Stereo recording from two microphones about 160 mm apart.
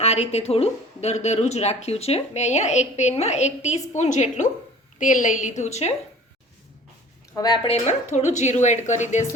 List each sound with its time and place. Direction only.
0.0 s a woman's voice: 40° left (ahead or behind)
7.3 s speech: 25° left (ahead or behind)
7.9 s a woman's voice: 45° left (ahead or behind)